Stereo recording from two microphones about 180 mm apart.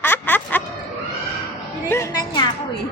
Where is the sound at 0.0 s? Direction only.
10° left (ahead or behind).